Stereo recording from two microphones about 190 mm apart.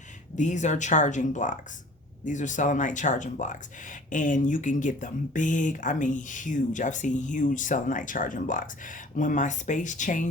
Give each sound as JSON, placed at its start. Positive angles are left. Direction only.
{"t": 0.3, "sound": "speech", "side_deg": 40}